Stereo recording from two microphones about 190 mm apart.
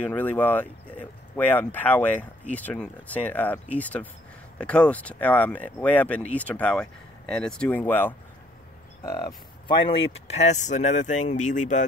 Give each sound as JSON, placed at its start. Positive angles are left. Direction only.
{"t": 0.0, "sound": "speech", "side_deg": 10}
{"t": 9.8, "sound": "speech", "side_deg": 35}